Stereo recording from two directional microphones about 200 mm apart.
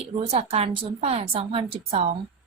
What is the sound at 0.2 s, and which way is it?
A woman's voice, 30° right (ahead or behind).